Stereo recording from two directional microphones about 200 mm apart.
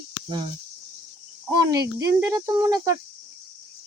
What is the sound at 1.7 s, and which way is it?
Speech, 15° right (ahead or behind).